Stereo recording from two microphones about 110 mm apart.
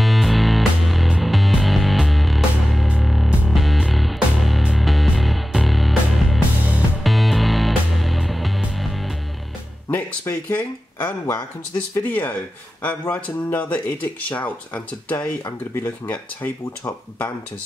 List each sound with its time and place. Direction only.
0.0 s music: centre (ahead or behind)
9.8 s a sound: 15° left (ahead or behind)
12.0 s speech: 15° left (ahead or behind)